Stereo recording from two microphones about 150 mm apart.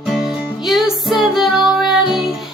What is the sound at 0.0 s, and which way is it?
Music, 5° right (ahead or behind).